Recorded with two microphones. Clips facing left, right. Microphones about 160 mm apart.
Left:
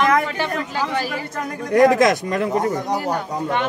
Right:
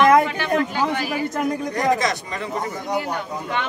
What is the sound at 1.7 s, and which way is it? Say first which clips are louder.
Speech: left 11 dB; 60° left (ahead or behind).